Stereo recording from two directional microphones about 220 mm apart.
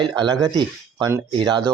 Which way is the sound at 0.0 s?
20° right (ahead or behind).